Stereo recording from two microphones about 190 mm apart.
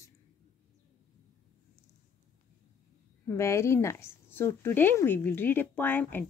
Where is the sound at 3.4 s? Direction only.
15° left (ahead or behind).